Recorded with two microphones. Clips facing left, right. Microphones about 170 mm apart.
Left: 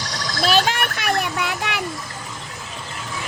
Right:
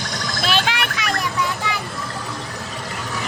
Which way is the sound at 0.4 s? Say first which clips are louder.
Left 3 dB; 40° left (ahead or behind).